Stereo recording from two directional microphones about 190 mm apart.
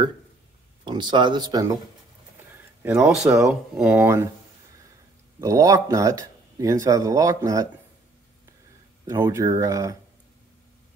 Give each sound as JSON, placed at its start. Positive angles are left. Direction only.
{"t": 0.8, "sound": "speech", "side_deg": -25}
{"t": 2.8, "sound": "speech", "side_deg": -10}
{"t": 5.4, "sound": "speech", "side_deg": -15}
{"t": 9.0, "sound": "speech", "side_deg": -15}